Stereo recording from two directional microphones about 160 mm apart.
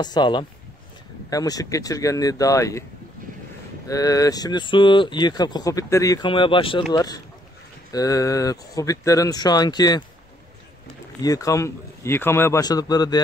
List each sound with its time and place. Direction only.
0.0 s speech: 25° left (ahead or behind)
3.9 s speech: 20° left (ahead or behind)
11.2 s speech: 20° left (ahead or behind)